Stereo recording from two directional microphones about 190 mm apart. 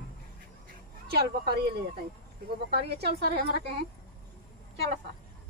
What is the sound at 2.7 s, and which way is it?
Speech, 60° right (ahead or behind).